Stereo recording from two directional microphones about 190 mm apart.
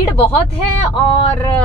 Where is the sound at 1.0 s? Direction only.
25° left (ahead or behind).